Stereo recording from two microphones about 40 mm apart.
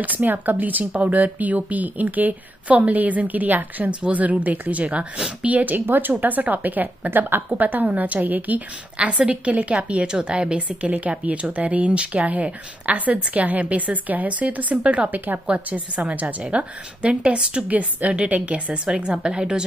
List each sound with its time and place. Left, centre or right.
0.0 s speech: right
3.9 s a woman's voice: right
4.2 s a woman's voice: right
7.1 s speech: right
8.9 s a woman's voice: right
10.0 s a woman's voice: right
14.8 s a woman's voice: right
15.0 s speech: right
15.4 s a woman's voice: right
17.6 s a woman's voice: right
18.9 s a woman's voice: right